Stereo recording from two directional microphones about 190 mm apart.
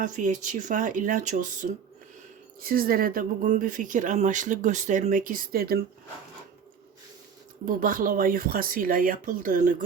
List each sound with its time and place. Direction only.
0.0 s speech: 45° right (ahead or behind)
7.6 s speech: 45° right (ahead or behind)